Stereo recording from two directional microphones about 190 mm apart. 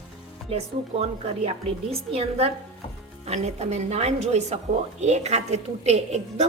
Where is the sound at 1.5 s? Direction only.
30° right (ahead or behind).